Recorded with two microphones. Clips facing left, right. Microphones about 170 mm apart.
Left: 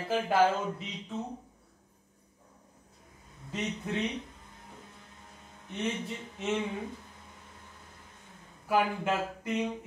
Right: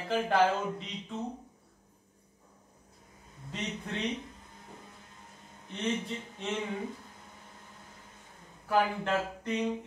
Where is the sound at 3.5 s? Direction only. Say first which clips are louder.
Left 3 dB; centre (ahead or behind).